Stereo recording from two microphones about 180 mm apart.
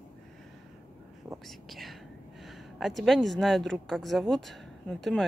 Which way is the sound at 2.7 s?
Centre (ahead or behind).